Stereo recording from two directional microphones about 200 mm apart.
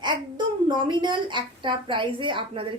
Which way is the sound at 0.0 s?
20° right (ahead or behind).